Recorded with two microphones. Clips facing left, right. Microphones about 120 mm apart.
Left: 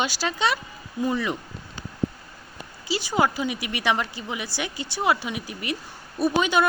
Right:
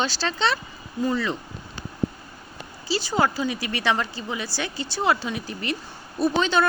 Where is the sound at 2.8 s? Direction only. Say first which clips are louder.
Even; 15° left (ahead or behind).